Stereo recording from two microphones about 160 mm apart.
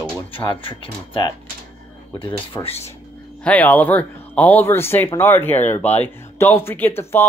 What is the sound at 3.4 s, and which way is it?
Speech, 10° left (ahead or behind).